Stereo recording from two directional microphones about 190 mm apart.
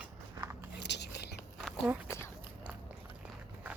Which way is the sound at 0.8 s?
65° left (ahead or behind).